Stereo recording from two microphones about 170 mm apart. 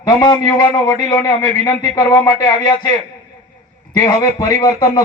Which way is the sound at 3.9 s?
25° left (ahead or behind).